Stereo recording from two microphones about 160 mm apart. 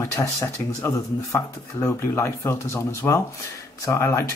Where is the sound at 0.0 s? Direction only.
20° left (ahead or behind).